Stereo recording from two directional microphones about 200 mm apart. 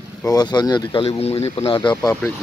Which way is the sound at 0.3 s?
20° left (ahead or behind).